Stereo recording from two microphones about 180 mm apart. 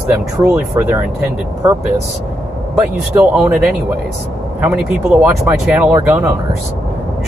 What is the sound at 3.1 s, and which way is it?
Speech, 10° right (ahead or behind).